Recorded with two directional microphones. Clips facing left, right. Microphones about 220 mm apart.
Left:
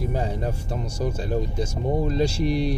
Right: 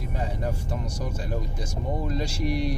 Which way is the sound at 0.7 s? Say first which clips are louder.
Left 4 dB; 30° left (ahead or behind).